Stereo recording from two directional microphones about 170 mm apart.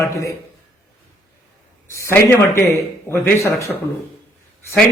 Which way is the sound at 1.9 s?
15° left (ahead or behind).